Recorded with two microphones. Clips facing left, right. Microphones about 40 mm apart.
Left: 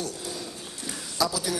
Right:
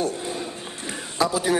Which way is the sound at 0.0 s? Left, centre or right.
Right.